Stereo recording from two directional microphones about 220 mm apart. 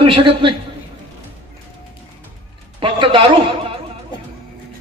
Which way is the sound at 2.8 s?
25° right (ahead or behind).